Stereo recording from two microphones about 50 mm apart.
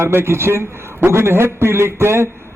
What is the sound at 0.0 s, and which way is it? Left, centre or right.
A man's voice, right.